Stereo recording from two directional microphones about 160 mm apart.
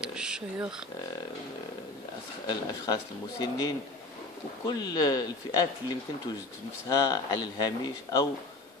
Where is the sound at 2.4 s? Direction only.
25° left (ahead or behind).